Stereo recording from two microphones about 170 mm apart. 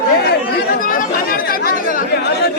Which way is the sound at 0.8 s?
55° left (ahead or behind).